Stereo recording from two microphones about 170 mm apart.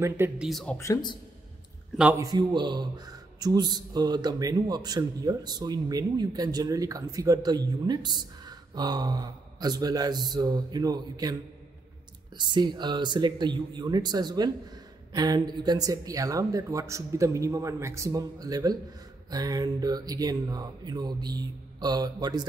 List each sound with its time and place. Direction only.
0.0 s speech: 15° right (ahead or behind)
0.5 s speech: centre (ahead or behind)
0.7 s a man's voice: 20° left (ahead or behind)
2.0 s speech: 10° right (ahead or behind)
2.2 s a man's voice: 25° right (ahead or behind)
12.4 s a man's voice: 25° right (ahead or behind)